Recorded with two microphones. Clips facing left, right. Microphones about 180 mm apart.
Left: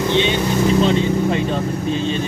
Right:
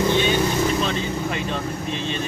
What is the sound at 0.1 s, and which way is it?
Vehicle, 20° left (ahead or behind).